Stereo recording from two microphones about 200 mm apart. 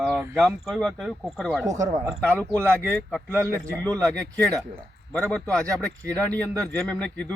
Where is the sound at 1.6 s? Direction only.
15° right (ahead or behind).